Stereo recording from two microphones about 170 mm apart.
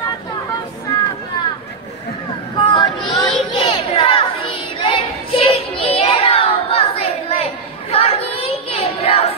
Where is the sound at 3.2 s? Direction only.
30° left (ahead or behind).